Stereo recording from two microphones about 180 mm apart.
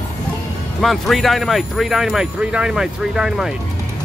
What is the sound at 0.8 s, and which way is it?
Speech, centre (ahead or behind).